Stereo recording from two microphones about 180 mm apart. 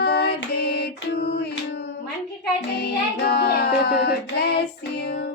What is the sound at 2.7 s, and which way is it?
Music, 65° left (ahead or behind).